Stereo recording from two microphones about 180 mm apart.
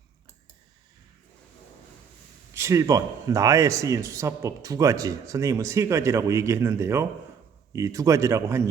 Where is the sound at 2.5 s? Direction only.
15° right (ahead or behind).